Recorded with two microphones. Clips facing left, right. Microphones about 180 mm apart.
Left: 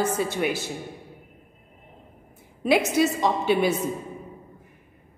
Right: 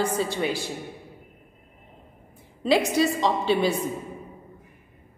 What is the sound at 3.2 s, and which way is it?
Speech, 10° left (ahead or behind).